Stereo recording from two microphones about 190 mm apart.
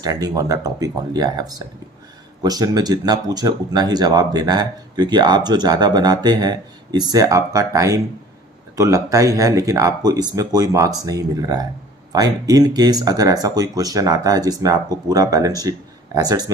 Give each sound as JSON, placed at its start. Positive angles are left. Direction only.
{"t": 0.0, "sound": "speech", "side_deg": -20}